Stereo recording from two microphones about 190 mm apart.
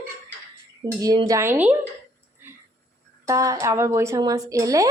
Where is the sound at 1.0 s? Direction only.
20° right (ahead or behind).